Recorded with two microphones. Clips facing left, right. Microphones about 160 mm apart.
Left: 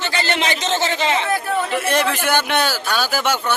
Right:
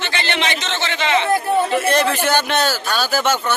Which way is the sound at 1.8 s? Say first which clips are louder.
Right 2 dB; 10° left (ahead or behind).